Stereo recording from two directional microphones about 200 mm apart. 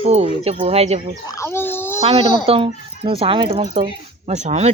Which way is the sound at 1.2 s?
15° left (ahead or behind).